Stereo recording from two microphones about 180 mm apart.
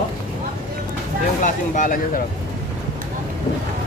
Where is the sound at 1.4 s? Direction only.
45° left (ahead or behind).